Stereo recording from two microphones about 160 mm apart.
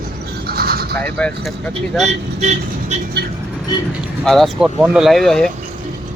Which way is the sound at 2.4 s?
45° right (ahead or behind).